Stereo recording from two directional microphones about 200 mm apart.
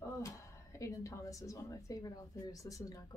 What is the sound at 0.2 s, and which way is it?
A woman's voice, 15° left (ahead or behind).